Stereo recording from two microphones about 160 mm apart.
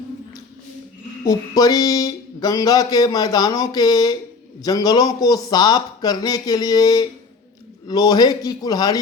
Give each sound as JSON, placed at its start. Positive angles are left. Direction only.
{"t": 1.2, "sound": "speech", "side_deg": 25}